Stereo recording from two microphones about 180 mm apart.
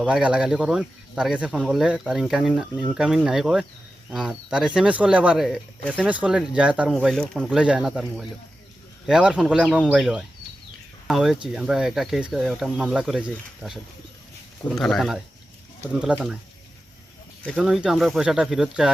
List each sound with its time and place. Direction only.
0.0 s speech: 5° right (ahead or behind)
17.4 s speech: centre (ahead or behind)